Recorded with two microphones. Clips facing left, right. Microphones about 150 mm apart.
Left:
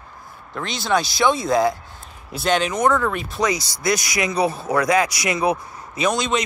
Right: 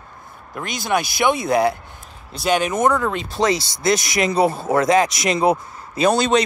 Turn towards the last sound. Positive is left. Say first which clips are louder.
# right 5 dB
turn(degrees=-35)  # may be behind; listen again after turning